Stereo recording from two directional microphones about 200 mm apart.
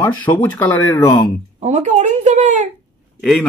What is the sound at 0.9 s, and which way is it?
Speech, 20° left (ahead or behind).